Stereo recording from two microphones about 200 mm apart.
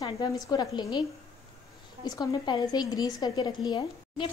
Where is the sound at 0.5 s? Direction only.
20° left (ahead or behind).